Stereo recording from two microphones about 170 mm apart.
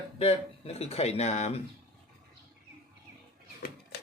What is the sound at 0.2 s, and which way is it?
Speech, 35° left (ahead or behind).